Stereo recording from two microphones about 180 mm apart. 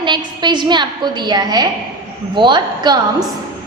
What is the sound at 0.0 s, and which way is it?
A woman's voice, 25° right (ahead or behind).